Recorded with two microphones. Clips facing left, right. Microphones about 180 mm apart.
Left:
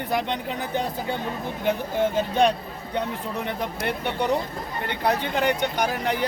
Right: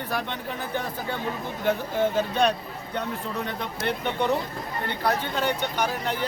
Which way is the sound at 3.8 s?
10° left (ahead or behind).